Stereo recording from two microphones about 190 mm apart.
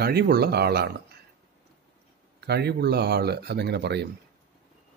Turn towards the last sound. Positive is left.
turn(degrees=-60)  # may be behind; listen again after turning